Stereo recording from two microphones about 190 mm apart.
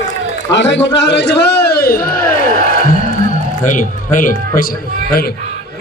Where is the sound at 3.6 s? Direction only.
45° left (ahead or behind).